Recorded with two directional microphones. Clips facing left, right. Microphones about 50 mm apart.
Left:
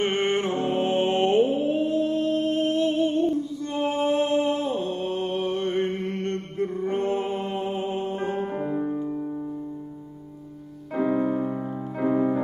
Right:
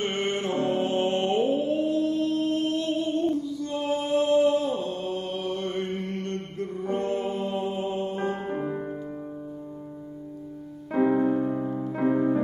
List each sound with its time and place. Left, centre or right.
0.0 s mantra: left
3.5 s music: left
6.2 s mantra: left
7.3 s music: left
8.4 s music: centre
10.9 s music: centre
11.1 s music: centre